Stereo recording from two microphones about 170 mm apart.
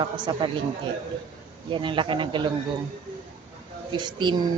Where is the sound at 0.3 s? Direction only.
25° right (ahead or behind).